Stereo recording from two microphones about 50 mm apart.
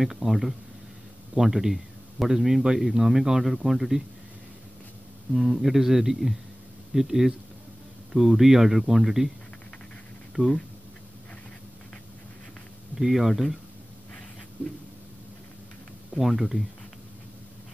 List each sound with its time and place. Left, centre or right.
0.0 s a man's voice: centre
5.3 s speech: centre
10.4 s speech: left
12.9 s speech: centre
16.2 s speech: centre